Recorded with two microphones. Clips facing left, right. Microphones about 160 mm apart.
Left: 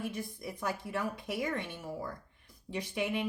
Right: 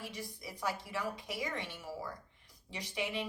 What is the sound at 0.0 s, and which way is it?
A woman's voice, 55° left (ahead or behind).